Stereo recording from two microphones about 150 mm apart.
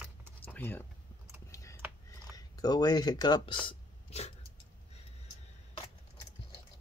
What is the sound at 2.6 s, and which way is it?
Speech, 25° left (ahead or behind).